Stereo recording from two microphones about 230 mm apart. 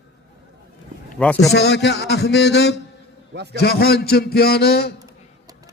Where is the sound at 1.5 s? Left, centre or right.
Left.